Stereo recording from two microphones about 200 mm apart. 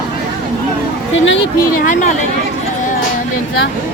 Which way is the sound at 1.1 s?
70° left (ahead or behind).